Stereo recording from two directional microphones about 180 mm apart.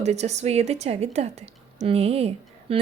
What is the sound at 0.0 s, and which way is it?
A woman's voice, 40° right (ahead or behind).